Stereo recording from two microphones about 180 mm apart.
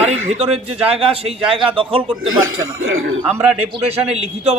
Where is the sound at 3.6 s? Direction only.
35° right (ahead or behind).